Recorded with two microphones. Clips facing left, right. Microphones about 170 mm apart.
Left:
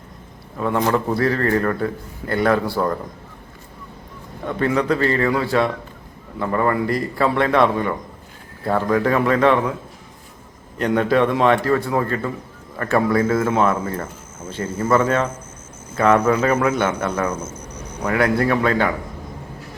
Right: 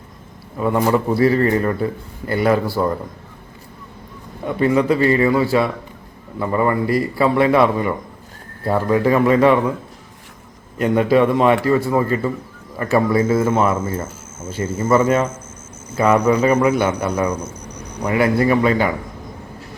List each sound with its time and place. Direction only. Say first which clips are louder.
0.5 s a man's voice: right 2 dB; 10° right (ahead or behind)
4.4 s a man's voice: right 3 dB; 10° right (ahead or behind)
10.8 s a man's voice: right 3 dB; 5° right (ahead or behind)
16.1 s a man's voice: right 3 dB; 15° right (ahead or behind)
16.6 s speech: right 3 dB; centre (ahead or behind)
17.2 s a man's voice: right 2 dB; 15° right (ahead or behind)